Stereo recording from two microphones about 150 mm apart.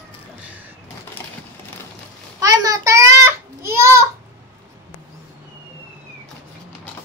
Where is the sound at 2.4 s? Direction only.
20° right (ahead or behind).